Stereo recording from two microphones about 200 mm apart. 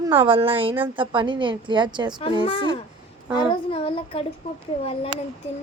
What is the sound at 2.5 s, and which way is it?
Child singing, 25° left (ahead or behind).